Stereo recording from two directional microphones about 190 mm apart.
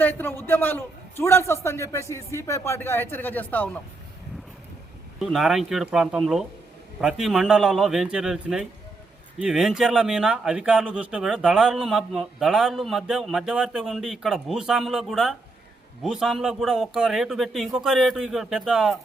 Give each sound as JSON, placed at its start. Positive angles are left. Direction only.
{"t": 0.0, "sound": "a man's voice", "side_deg": 10}
{"t": 5.2, "sound": "speech", "side_deg": 0}